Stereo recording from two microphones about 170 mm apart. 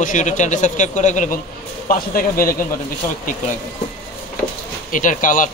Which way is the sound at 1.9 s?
55° left (ahead or behind).